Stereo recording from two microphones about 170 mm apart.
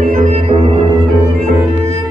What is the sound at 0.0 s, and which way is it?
Music, 40° right (ahead or behind).